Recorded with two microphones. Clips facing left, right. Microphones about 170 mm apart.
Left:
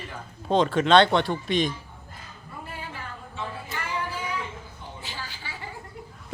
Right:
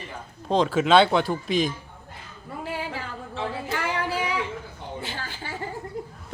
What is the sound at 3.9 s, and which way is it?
Music, 85° right.